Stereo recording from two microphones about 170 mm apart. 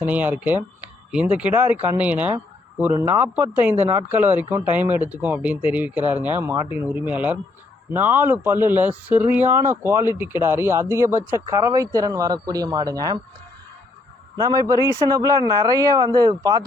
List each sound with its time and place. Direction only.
0.0 s speech: 10° right (ahead or behind)
14.3 s speech: 20° right (ahead or behind)